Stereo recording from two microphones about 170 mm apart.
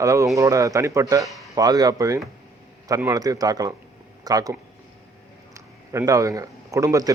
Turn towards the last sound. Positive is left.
turn(degrees=-20)  # may be behind; listen again after turning